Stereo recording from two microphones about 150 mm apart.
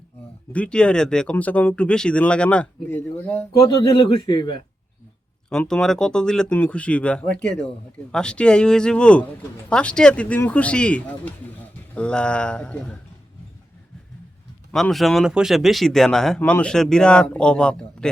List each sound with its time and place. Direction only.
0.5 s speech: 5° left (ahead or behind)
3.9 s speech: 30° left (ahead or behind)
5.5 s speech: 5° left (ahead or behind)
14.7 s speech: 5° left (ahead or behind)